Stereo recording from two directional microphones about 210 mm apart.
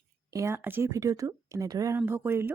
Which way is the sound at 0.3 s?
15° right (ahead or behind).